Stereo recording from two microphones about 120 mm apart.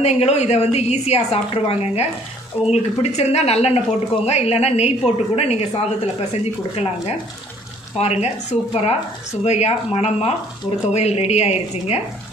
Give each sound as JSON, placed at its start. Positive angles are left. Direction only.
{"t": 0.0, "sound": "speech", "side_deg": 65}